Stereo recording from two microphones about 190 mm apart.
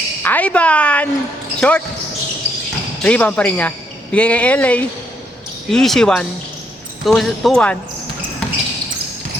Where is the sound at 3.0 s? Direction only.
5° left (ahead or behind).